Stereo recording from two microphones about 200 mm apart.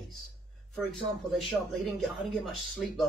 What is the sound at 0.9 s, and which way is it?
Speech, centre (ahead or behind).